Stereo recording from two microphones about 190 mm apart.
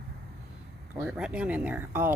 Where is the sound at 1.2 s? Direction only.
5° right (ahead or behind).